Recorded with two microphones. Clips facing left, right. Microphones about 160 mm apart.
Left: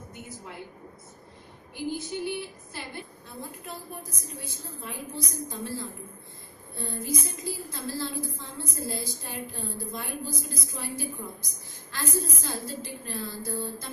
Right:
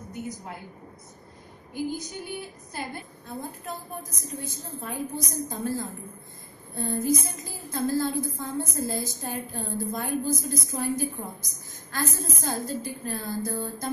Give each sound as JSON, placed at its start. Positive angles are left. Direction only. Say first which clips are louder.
{"t": 1.7, "sound": "a woman's voice", "louder": "right 1 dB", "side_deg": -45}